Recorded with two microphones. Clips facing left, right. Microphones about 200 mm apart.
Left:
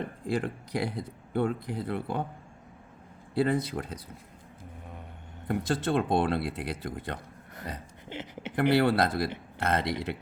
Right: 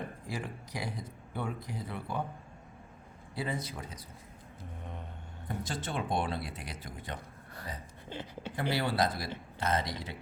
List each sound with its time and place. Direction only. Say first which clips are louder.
0.3 s speech: left 13 dB; 60° left (ahead or behind)
3.3 s speech: left 10 dB; 60° left (ahead or behind)
5.5 s speech: left 10 dB; 60° left (ahead or behind)
8.1 s speech: left 2 dB; 20° left (ahead or behind)
8.7 s speech: left 6 dB; 60° left (ahead or behind)